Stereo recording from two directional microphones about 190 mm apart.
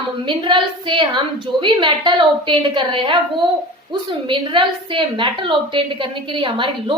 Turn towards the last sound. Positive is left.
turn(degrees=-25)  # may be behind; listen again after turning